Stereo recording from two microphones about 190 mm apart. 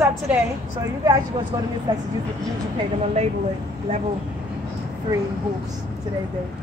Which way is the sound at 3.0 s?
35° right (ahead or behind).